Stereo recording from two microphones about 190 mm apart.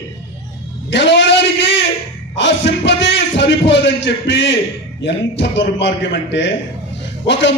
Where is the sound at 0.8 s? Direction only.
70° left (ahead or behind).